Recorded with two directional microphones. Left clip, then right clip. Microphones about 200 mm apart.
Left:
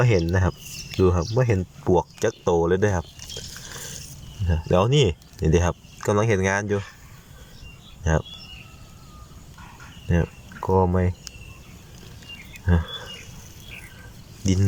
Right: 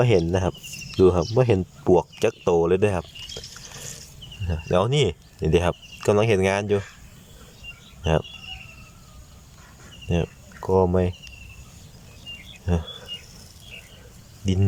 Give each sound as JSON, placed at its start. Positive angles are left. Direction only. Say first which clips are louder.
{"t": 0.0, "sound": "speech", "louder": "right 2 dB", "side_deg": -10}
{"t": 1.5, "sound": "speech", "louder": "right 3 dB", "side_deg": -10}
{"t": 4.4, "sound": "speech", "louder": "left 1 dB", "side_deg": 0}
{"t": 8.0, "sound": "speech", "louder": "right 2 dB", "side_deg": -5}
{"t": 10.1, "sound": "speech", "louder": "even", "side_deg": -10}
{"t": 12.6, "sound": "insect", "louder": "left 1 dB", "side_deg": -5}
{"t": 14.4, "sound": "speech", "louder": "left 1 dB", "side_deg": -5}